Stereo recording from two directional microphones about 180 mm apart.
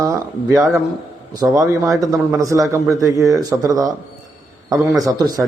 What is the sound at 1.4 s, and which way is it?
A man's voice, 15° right (ahead or behind).